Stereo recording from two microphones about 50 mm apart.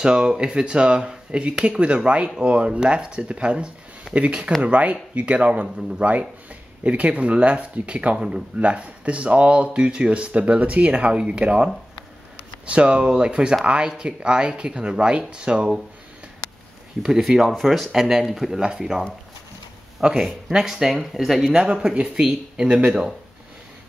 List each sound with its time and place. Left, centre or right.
0.0 s speech: centre
1.5 s speech: centre
1.8 s speech: right
17.0 s speech: centre
18.6 s speech: centre
21.5 s speech: centre